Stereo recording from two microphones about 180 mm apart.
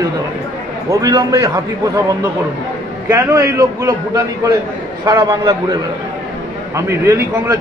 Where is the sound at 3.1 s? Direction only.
15° right (ahead or behind).